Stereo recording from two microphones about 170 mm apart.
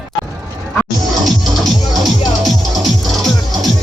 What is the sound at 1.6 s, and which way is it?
Music, centre (ahead or behind).